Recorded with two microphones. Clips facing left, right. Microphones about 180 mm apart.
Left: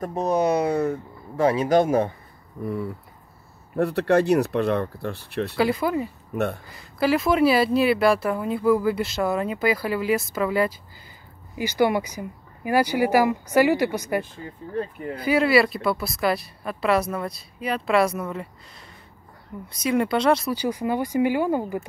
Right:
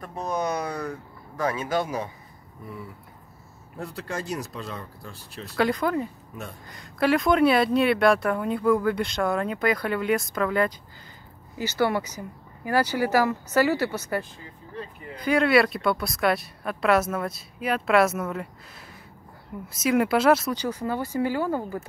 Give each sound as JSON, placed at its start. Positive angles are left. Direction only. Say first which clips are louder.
{"t": 0.0, "sound": "speech", "louder": "left 7 dB", "side_deg": 40}
{"t": 1.7, "sound": "speech", "louder": "left 8 dB", "side_deg": 50}
{"t": 5.6, "sound": "speech", "louder": "even", "side_deg": 5}
{"t": 6.3, "sound": "speech", "louder": "left 13 dB", "side_deg": 70}
{"t": 6.7, "sound": "speech", "louder": "right 2 dB", "side_deg": 0}
{"t": 20.5, "sound": "speech", "louder": "left 3 dB", "side_deg": 10}